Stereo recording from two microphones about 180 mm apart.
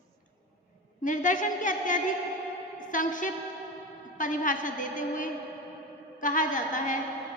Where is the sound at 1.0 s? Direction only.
45° left (ahead or behind).